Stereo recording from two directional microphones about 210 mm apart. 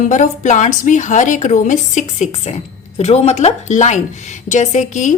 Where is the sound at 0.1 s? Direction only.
35° left (ahead or behind).